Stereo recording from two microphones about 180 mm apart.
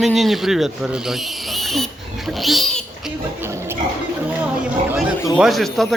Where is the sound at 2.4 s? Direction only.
Centre (ahead or behind).